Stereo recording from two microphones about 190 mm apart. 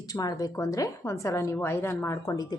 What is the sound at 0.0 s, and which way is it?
A woman's voice, 20° left (ahead or behind).